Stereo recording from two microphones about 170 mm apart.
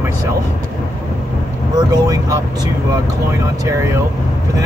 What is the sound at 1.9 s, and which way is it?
Vehicle, 20° right (ahead or behind).